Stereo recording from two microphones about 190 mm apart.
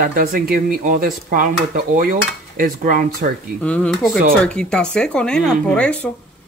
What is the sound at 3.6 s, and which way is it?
Speech, 5° left (ahead or behind).